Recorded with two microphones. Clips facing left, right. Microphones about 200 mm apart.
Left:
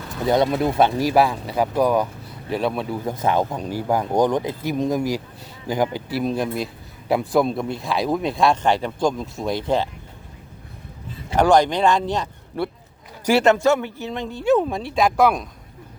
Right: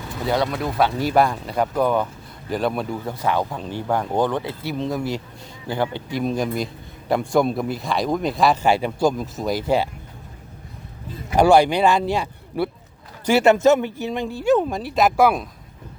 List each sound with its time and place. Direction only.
0.3 s speech: 20° left (ahead or behind)
0.9 s speech: 5° left (ahead or behind)
3.1 s speech: 20° left (ahead or behind)
6.1 s speech: centre (ahead or behind)
11.3 s speech: 10° right (ahead or behind)
13.6 s speech: 20° right (ahead or behind)